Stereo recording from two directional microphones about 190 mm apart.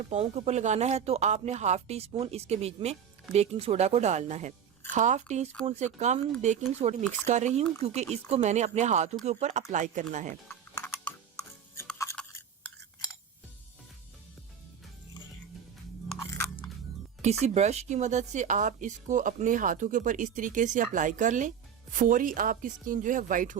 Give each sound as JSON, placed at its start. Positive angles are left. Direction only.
{"t": 0.0, "sound": "speech", "side_deg": -35}
{"t": 10.5, "sound": "typing", "side_deg": 10}
{"t": 16.1, "sound": "chewing", "side_deg": 15}
{"t": 17.2, "sound": "speech", "side_deg": -35}